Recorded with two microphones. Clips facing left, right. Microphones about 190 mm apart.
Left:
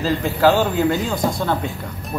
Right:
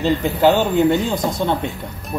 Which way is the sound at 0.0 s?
20° right (ahead or behind).